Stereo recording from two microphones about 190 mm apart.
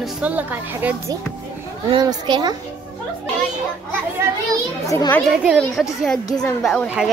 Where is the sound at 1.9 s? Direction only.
20° right (ahead or behind).